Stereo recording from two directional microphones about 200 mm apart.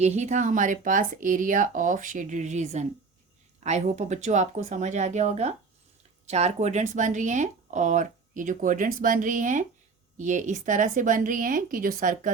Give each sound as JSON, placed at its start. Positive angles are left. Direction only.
{"t": 0.0, "sound": "speech", "side_deg": -35}